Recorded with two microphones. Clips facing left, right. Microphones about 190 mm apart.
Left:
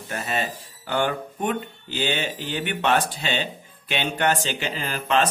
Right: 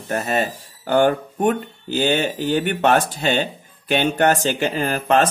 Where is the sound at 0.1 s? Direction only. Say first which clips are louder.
Right 6 dB; 45° right (ahead or behind).